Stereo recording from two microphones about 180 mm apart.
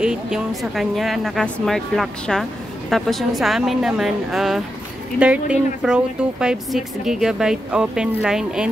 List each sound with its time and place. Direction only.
0.0 s speech: 5° right (ahead or behind)